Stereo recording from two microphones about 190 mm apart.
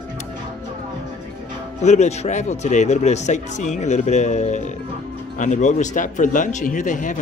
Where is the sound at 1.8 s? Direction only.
35° left (ahead or behind).